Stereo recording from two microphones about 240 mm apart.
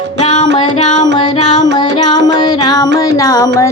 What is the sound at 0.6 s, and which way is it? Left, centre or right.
Music, centre.